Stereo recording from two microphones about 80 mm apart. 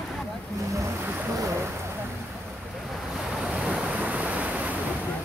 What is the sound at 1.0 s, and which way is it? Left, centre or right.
Boat, right.